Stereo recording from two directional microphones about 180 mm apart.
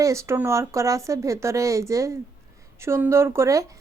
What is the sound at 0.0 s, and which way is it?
A woman's voice, 15° right (ahead or behind).